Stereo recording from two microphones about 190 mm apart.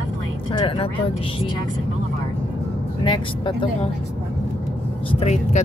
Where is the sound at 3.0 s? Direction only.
25° left (ahead or behind).